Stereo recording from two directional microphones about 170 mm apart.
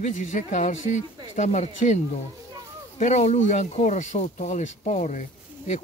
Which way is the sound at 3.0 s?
45° left (ahead or behind).